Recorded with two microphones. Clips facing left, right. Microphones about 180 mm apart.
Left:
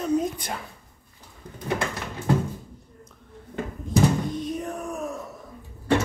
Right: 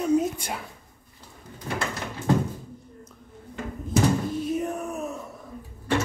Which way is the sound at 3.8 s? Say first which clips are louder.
Left 1 dB; 5° right (ahead or behind).